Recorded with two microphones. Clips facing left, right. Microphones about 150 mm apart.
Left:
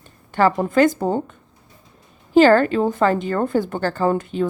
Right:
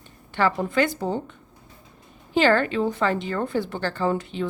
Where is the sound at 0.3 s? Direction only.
45° left (ahead or behind).